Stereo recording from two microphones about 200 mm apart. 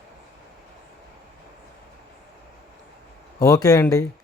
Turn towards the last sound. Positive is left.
turn(degrees=15)  # may be behind; listen again after turning